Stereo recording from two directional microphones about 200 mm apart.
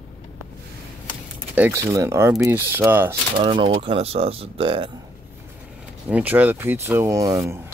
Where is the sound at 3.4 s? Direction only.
25° right (ahead or behind).